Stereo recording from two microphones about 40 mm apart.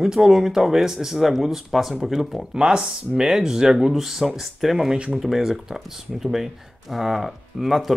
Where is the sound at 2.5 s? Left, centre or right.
Centre.